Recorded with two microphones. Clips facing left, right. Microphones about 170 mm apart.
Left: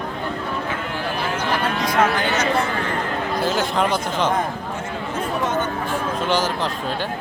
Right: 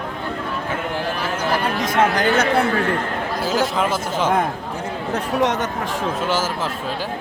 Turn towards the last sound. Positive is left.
turn(degrees=-5)  # may be behind; listen again after turning